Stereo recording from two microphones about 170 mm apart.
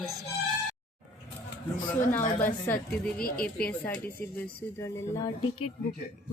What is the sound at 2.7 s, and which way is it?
A woman's voice, 5° left (ahead or behind).